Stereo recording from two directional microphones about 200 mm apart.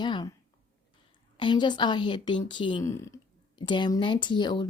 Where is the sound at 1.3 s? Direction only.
25° left (ahead or behind).